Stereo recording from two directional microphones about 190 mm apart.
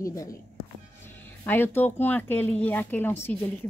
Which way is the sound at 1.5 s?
10° left (ahead or behind).